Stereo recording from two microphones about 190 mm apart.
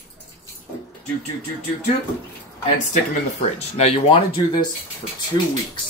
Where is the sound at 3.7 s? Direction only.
30° left (ahead or behind).